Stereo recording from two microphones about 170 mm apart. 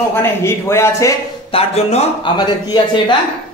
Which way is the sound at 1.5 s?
35° left (ahead or behind).